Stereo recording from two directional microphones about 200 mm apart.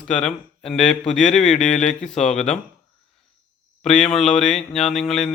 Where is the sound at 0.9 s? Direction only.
35° left (ahead or behind).